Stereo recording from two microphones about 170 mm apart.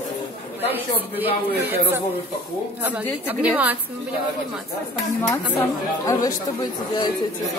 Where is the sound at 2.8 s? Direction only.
10° right (ahead or behind).